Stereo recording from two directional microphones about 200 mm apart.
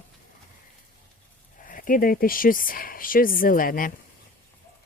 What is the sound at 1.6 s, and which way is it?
Speech, 45° left (ahead or behind).